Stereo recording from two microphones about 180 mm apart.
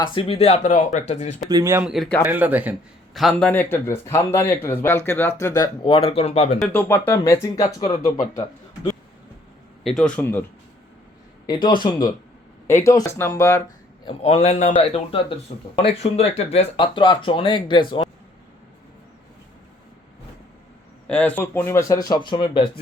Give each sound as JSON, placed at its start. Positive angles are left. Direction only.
{"t": 0.0, "sound": "speech", "side_deg": 30}
{"t": 1.5, "sound": "speech", "side_deg": -20}
{"t": 1.8, "sound": "a man's voice", "side_deg": 0}
{"t": 3.5, "sound": "speech", "side_deg": 10}
{"t": 6.6, "sound": "speech", "side_deg": 10}
{"t": 9.8, "sound": "speech", "side_deg": 5}
{"t": 11.4, "sound": "speech", "side_deg": 25}
{"t": 14.0, "sound": "speech", "side_deg": 35}
{"t": 15.8, "sound": "speech", "side_deg": 35}
{"t": 21.1, "sound": "speech", "side_deg": 10}